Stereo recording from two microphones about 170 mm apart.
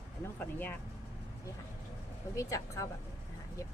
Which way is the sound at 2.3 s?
20° left (ahead or behind).